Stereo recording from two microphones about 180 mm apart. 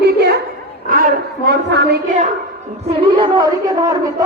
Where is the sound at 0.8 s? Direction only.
50° right (ahead or behind); by 2.0 s 70° right (ahead or behind).